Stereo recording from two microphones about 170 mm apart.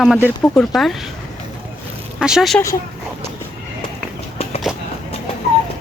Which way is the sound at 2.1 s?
5° right (ahead or behind).